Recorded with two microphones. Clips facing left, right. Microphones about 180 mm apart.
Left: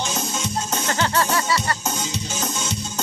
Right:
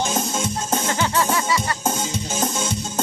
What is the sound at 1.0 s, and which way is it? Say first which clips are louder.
Music: left 2 dB; 10° right (ahead or behind).